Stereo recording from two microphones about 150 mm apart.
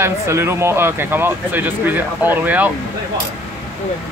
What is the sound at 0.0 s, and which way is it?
Speech, 15° right (ahead or behind).